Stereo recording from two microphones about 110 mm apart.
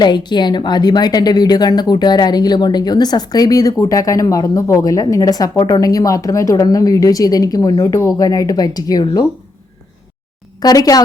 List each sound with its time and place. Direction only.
0.0 s a woman's voice: 40° left (ahead or behind)
10.6 s a woman's voice: 35° left (ahead or behind)